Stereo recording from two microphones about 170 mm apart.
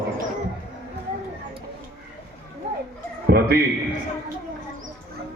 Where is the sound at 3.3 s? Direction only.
65° right (ahead or behind).